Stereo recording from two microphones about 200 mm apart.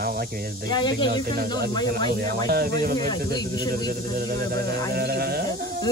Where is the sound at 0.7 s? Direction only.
20° left (ahead or behind).